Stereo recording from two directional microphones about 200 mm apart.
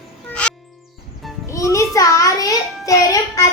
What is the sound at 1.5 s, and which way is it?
Child singing, 15° left (ahead or behind).